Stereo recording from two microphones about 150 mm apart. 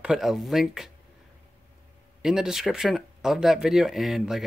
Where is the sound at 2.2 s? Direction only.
5° right (ahead or behind).